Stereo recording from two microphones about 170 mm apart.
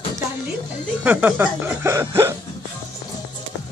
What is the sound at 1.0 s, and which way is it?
Speech, 10° right (ahead or behind).